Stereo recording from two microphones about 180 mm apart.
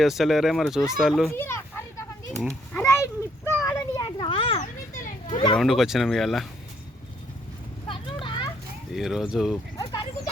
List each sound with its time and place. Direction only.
0.0 s speech: centre (ahead or behind)
1.3 s children playing: 15° left (ahead or behind); by 4.6 s 30° left (ahead or behind)
5.5 s speech: centre (ahead or behind)
7.9 s a sound: 30° left (ahead or behind)
9.0 s speech: centre (ahead or behind)
9.7 s a sound: 25° left (ahead or behind)